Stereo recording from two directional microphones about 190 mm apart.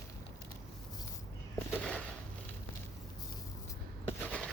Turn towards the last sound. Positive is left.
turn(degrees=5)  # may be behind; listen again after turning